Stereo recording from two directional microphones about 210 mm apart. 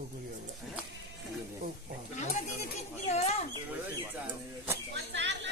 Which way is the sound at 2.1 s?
35° left (ahead or behind).